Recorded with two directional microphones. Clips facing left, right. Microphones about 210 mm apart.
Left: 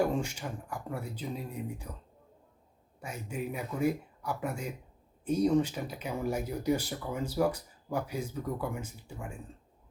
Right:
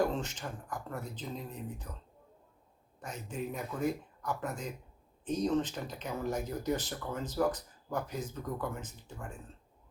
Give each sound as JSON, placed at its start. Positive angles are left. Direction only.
{"t": 0.0, "sound": "speech", "side_deg": 10}
{"t": 3.0, "sound": "speech", "side_deg": 10}